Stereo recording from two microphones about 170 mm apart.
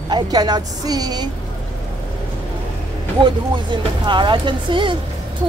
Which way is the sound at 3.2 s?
25° right (ahead or behind).